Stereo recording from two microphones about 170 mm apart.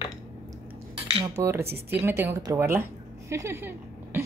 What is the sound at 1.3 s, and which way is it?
A woman's voice, 15° right (ahead or behind).